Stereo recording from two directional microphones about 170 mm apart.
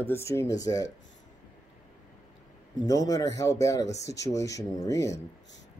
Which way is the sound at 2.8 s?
20° left (ahead or behind).